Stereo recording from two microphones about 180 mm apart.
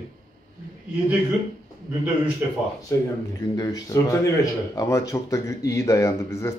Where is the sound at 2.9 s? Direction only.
15° left (ahead or behind).